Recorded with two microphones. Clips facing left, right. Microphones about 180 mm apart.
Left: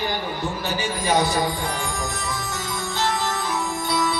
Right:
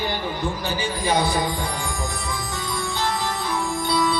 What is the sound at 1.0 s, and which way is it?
Speech, 15° right (ahead or behind).